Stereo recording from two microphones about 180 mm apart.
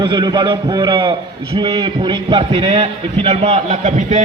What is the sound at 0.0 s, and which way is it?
A man's voice, 25° right (ahead or behind).